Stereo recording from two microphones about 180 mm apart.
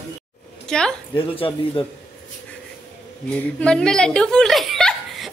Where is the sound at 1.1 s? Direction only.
30° left (ahead or behind).